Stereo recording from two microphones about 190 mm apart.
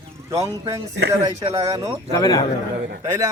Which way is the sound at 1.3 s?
20° right (ahead or behind).